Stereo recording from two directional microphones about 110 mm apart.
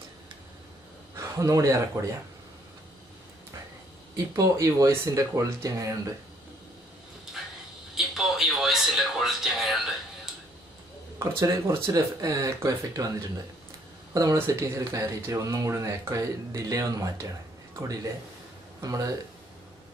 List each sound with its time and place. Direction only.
1.1 s speech: 30° right (ahead or behind)
4.6 s speech: 30° right (ahead or behind)
7.9 s a sound: 5° right (ahead or behind)
11.1 s speech: 25° right (ahead or behind)
14.1 s speech: 30° right (ahead or behind)
18.8 s speech: 30° right (ahead or behind)